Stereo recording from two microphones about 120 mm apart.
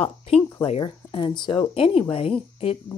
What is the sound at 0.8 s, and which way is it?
Speech, 45° left (ahead or behind).